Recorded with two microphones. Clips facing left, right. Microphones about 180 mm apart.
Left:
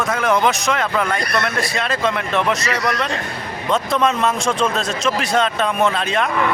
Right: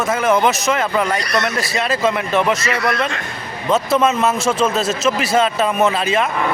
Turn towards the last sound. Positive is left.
turn(degrees=-5)  # may be behind; listen again after turning